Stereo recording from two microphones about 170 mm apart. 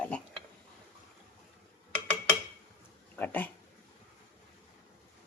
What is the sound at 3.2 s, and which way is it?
Dog, 10° left (ahead or behind).